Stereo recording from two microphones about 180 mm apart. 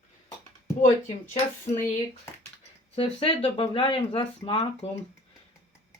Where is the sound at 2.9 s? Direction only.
30° left (ahead or behind).